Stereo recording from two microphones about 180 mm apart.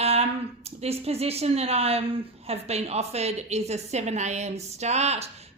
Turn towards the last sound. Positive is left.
turn(degrees=-35)  # may be behind; listen again after turning